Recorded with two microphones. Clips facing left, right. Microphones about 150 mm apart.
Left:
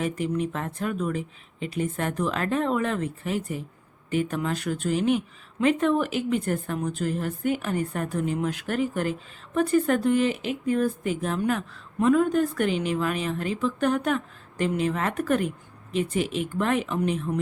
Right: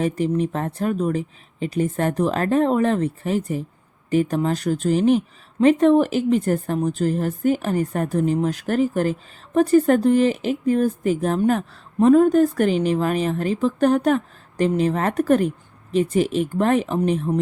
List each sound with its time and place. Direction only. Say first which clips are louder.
0.0 s speech: right 6 dB; 35° right (ahead or behind)